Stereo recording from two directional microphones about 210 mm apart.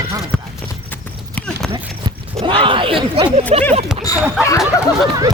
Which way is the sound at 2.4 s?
25° right (ahead or behind).